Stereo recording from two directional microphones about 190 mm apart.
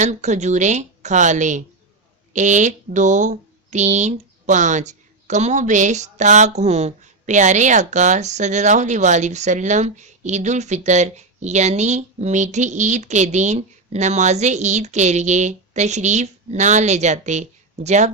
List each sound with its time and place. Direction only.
0.0 s speech: 35° right (ahead or behind)